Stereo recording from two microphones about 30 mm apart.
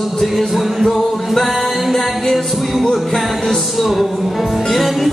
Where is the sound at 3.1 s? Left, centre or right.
Centre.